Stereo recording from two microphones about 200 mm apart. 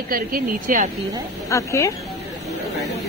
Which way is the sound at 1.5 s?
15° left (ahead or behind).